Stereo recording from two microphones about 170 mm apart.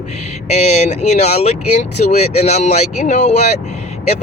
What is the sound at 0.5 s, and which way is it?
Speech, 40° left (ahead or behind).